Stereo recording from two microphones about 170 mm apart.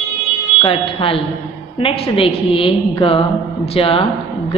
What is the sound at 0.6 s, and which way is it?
A woman's voice, 30° left (ahead or behind).